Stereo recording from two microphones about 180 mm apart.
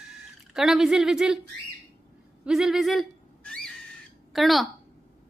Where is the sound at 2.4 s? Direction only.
5° right (ahead or behind).